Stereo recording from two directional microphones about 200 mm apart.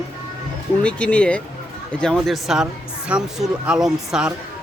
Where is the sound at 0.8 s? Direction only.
5° left (ahead or behind).